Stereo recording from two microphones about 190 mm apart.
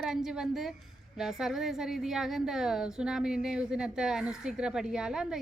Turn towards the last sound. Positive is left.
turn(degrees=-5)  # may be behind; listen again after turning